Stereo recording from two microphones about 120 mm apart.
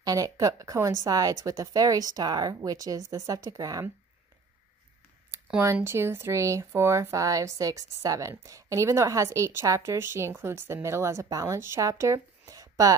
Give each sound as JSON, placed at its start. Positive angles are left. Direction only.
{"t": 0.0, "sound": "a woman's voice", "side_deg": -30}
{"t": 5.9, "sound": "a woman's voice", "side_deg": -20}